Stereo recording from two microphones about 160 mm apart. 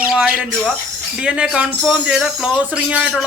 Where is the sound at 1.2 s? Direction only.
5° right (ahead or behind).